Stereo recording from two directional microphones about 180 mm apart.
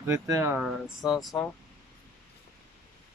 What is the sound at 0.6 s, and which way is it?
Speech, centre (ahead or behind).